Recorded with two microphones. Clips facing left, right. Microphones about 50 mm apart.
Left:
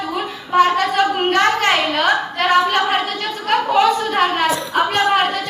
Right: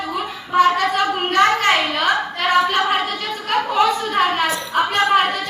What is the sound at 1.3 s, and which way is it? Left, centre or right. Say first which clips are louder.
A woman's voice: right 2 dB; centre.